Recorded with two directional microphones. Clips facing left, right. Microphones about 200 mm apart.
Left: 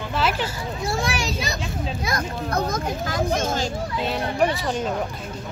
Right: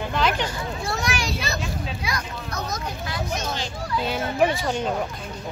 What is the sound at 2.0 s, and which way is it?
Speech, 50° left (ahead or behind).